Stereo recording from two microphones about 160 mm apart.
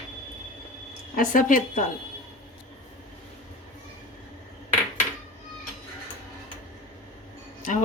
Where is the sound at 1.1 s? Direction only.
55° left (ahead or behind).